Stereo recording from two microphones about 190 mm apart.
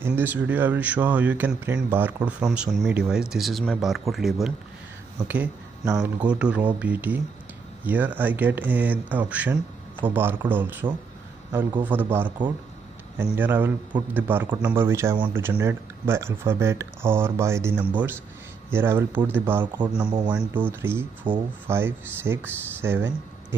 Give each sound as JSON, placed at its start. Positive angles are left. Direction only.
{"t": 0.0, "sound": "speech", "side_deg": -10}
{"t": 13.4, "sound": "speech", "side_deg": -10}
{"t": 20.1, "sound": "speech", "side_deg": -25}
{"t": 20.3, "sound": "speech", "side_deg": -10}